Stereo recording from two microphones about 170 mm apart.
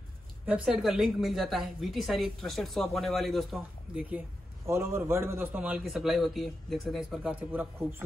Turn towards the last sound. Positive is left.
turn(degrees=-10)  # may be behind; listen again after turning